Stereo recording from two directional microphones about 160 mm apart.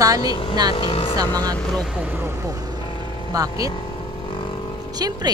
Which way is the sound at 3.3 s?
20° right (ahead or behind).